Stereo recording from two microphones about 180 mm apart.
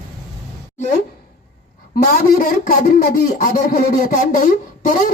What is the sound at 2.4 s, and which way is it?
Speech, 55° left (ahead or behind).